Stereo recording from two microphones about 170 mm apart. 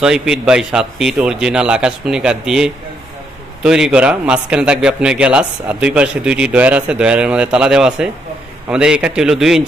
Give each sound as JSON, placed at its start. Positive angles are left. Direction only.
{"t": 0.0, "sound": "a man's voice", "side_deg": -5}